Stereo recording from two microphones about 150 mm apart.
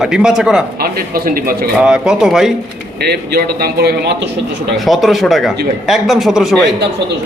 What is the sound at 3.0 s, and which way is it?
A man's voice, 90° right.